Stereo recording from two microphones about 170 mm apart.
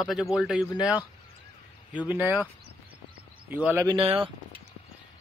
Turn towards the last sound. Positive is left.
turn(degrees=-30)  # may be behind; listen again after turning